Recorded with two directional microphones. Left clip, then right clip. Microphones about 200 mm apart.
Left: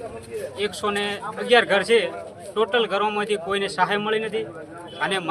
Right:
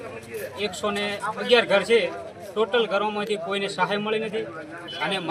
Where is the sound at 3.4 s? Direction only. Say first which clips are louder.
Left 2 dB; centre (ahead or behind).